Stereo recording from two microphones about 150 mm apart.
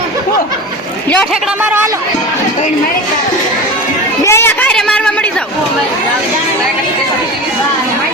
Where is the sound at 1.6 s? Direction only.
15° right (ahead or behind).